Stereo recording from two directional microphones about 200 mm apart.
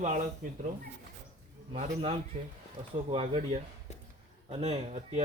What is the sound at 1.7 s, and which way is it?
A man's voice, 35° right (ahead or behind).